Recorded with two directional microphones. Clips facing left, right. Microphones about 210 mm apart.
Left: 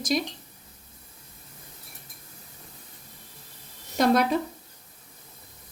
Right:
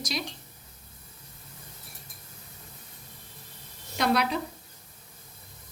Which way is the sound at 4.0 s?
45° left (ahead or behind).